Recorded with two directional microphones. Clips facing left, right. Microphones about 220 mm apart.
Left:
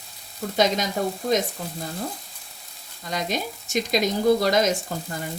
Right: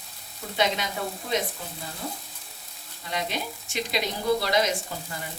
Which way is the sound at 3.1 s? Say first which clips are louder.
Left 3 dB; 40° left (ahead or behind).